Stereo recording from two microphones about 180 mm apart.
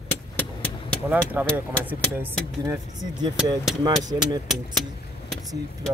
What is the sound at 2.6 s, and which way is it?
Speech, 20° right (ahead or behind).